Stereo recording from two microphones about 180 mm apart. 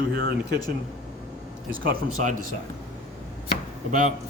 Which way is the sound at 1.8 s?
55° right (ahead or behind).